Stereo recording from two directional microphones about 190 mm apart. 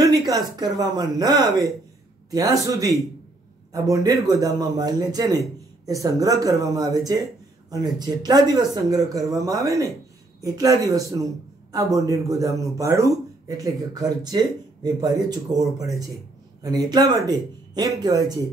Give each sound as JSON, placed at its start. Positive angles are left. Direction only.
{"t": 0.6, "sound": "speech", "side_deg": -20}